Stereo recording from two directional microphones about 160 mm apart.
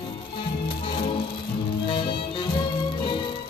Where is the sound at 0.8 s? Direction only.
35° left (ahead or behind).